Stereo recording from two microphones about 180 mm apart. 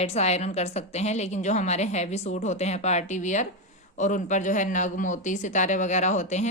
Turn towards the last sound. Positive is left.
turn(degrees=40)  # may be behind; listen again after turning